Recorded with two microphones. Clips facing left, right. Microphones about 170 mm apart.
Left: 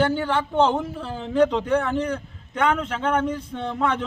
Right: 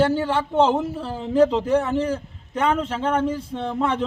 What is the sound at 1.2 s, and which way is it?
A man's voice, 30° right (ahead or behind).